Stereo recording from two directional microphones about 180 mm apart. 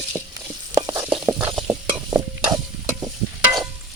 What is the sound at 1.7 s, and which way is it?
Stir, 15° right (ahead or behind).